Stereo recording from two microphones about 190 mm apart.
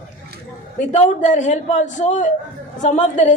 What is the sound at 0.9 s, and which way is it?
A woman's voice, 40° left (ahead or behind).